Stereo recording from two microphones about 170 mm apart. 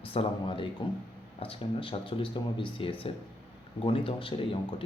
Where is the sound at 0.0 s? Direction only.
35° left (ahead or behind).